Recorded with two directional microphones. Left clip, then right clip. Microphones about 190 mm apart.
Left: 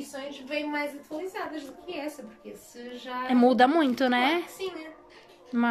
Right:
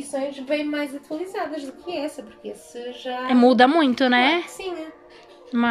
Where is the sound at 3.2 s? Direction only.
Centre (ahead or behind).